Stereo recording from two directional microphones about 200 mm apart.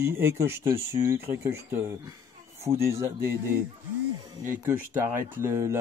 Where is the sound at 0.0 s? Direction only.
10° right (ahead or behind).